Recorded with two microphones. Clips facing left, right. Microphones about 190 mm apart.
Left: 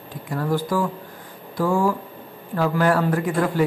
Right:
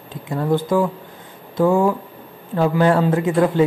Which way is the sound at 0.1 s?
25° right (ahead or behind).